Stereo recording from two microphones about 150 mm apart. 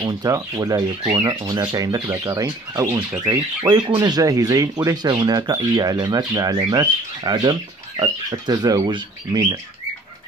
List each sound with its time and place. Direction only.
0.0 s speech: 25° right (ahead or behind)